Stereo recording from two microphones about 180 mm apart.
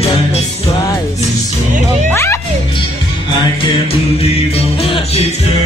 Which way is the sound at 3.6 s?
35° left (ahead or behind).